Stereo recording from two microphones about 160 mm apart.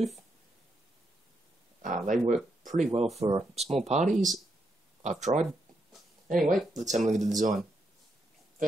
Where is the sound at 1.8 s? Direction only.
55° right (ahead or behind).